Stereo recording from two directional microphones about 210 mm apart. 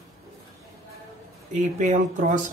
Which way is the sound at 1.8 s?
35° right (ahead or behind).